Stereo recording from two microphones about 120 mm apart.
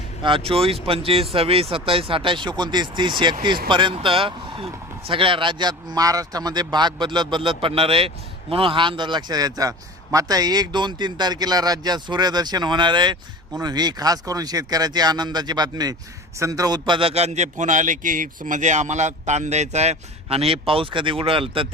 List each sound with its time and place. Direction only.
0.2 s a man's voice: 45° right (ahead or behind)